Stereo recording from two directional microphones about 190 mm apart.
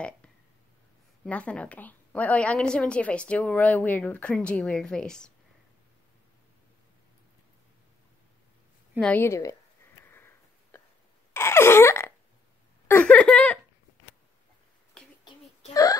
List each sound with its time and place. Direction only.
1.2 s a woman's voice: 5° left (ahead or behind)
9.0 s a woman's voice: 10° left (ahead or behind)
10.0 s sniff: 10° left (ahead or behind)
11.3 s a sound: 15° left (ahead or behind)
15.7 s whimper: 20° left (ahead or behind)